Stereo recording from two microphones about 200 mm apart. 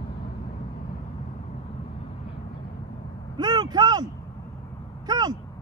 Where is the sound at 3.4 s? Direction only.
20° right (ahead or behind).